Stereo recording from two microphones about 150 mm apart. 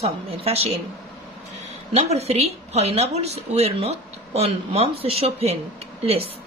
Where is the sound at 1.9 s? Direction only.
45° right (ahead or behind).